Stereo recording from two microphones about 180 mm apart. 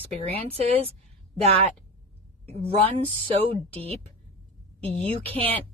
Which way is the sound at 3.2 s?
30° right (ahead or behind).